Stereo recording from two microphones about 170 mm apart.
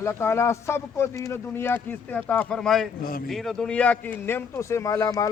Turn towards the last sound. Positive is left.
turn(degrees=20)  # may be behind; listen again after turning